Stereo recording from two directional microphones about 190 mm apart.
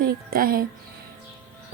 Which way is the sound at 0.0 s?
50° right (ahead or behind).